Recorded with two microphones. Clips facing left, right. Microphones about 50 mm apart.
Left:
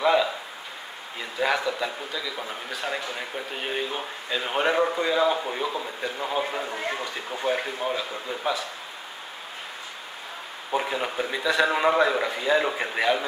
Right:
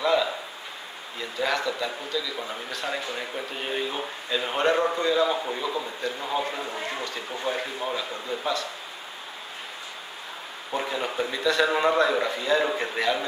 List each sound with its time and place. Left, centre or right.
0.0 s a sound: centre
1.4 s a man's voice: centre
10.7 s a man's voice: centre